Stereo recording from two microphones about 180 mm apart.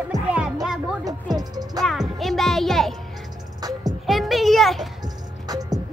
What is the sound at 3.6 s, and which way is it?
Music, 20° right (ahead or behind).